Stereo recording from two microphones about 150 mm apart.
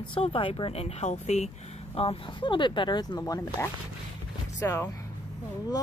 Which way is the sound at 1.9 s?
40° left (ahead or behind).